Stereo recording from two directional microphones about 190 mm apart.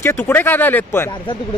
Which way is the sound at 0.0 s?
10° left (ahead or behind).